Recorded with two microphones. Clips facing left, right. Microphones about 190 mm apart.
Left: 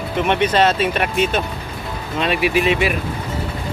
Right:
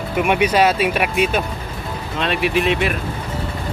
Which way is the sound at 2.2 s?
5° left (ahead or behind).